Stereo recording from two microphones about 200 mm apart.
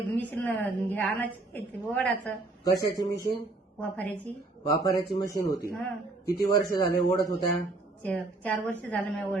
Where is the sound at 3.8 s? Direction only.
5° left (ahead or behind).